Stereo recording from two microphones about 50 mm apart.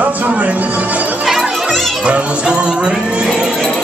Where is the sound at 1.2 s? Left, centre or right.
Centre.